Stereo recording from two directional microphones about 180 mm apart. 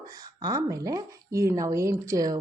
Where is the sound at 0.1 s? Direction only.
20° right (ahead or behind).